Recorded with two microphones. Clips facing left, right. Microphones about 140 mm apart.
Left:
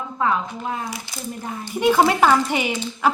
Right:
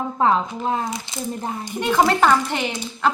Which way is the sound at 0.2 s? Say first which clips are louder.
Right 3 dB; 30° right (ahead or behind).